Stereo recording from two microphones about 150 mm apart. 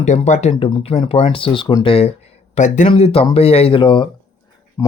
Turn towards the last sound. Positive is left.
turn(degrees=20)  # may be behind; listen again after turning